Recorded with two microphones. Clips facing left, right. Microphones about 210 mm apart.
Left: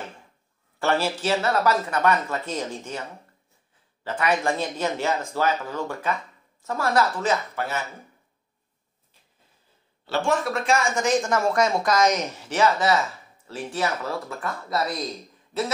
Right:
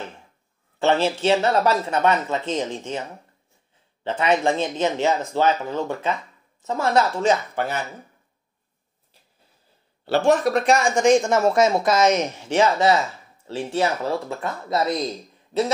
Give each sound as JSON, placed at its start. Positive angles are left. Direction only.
{"t": 0.7, "sound": "speech", "side_deg": -20}
{"t": 10.0, "sound": "speech", "side_deg": -65}
{"t": 10.7, "sound": "speech", "side_deg": -30}